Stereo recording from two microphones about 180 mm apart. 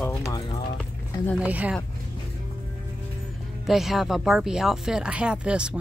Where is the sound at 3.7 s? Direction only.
Centre (ahead or behind).